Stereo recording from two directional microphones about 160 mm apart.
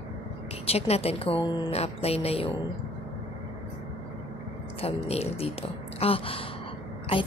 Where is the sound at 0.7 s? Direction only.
40° left (ahead or behind).